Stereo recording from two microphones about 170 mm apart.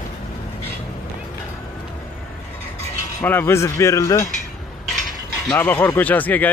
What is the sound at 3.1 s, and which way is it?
Speech, 10° left (ahead or behind).